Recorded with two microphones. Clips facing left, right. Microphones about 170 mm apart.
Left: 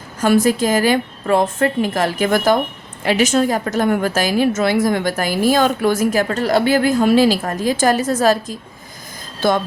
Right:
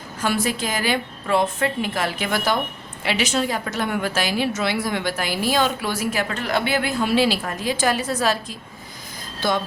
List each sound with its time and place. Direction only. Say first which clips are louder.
0.2 s a woman's voice: left 9 dB; 45° left (ahead or behind)